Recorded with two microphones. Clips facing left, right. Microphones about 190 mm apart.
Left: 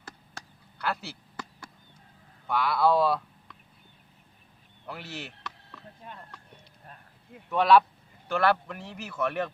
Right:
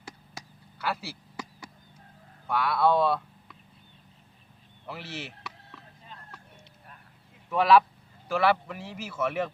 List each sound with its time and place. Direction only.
0.0 s chop: 5° right (ahead or behind)
2.5 s speech: centre (ahead or behind)
4.9 s speech: centre (ahead or behind)
6.0 s whispering: 60° left (ahead or behind)
7.5 s speech: centre (ahead or behind)